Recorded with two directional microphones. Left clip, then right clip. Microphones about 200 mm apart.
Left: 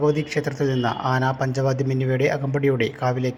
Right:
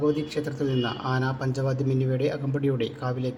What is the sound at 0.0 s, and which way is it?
Speech, 15° left (ahead or behind).